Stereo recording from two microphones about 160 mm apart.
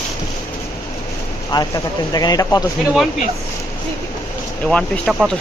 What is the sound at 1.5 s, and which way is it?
Speech, 25° left (ahead or behind).